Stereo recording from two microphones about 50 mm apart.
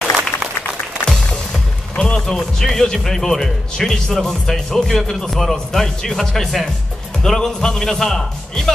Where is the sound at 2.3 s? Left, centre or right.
Centre.